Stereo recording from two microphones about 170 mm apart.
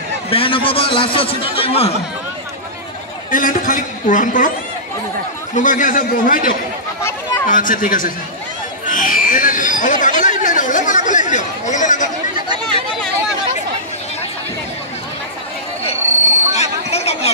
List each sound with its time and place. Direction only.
0.3 s a man's voice: 30° left (ahead or behind)
3.3 s a man's voice: 55° left (ahead or behind)
5.5 s a man's voice: 50° left (ahead or behind)
7.0 s chatter: 15° left (ahead or behind)
7.4 s a man's voice: 50° left (ahead or behind)
8.9 s a sound: 50° left (ahead or behind)
10.4 s speech: 50° left (ahead or behind)
12.4 s speech: 25° right (ahead or behind)
16.5 s a sound: 40° left (ahead or behind)